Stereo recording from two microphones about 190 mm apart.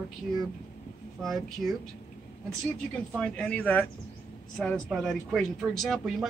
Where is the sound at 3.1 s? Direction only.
5° left (ahead or behind).